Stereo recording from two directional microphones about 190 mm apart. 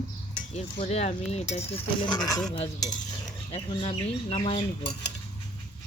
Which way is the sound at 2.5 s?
25° left (ahead or behind).